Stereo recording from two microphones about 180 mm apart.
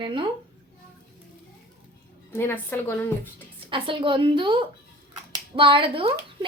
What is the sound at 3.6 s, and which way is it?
A woman's voice, 30° right (ahead or behind).